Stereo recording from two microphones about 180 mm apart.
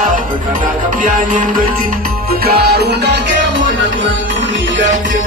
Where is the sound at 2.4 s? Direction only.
60° right (ahead or behind).